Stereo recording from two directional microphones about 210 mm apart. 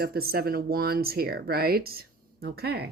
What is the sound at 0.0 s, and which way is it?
Speech, 45° right (ahead or behind).